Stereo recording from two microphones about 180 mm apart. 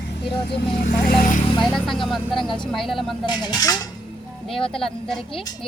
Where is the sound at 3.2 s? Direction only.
25° left (ahead or behind).